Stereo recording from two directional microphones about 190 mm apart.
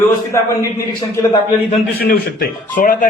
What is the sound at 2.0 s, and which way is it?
Speech, 55° left (ahead or behind).